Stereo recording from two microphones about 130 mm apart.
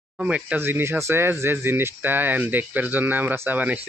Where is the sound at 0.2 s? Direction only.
10° right (ahead or behind).